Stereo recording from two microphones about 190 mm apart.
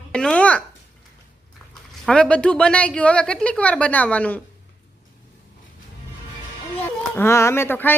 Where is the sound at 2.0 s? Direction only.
5° left (ahead or behind).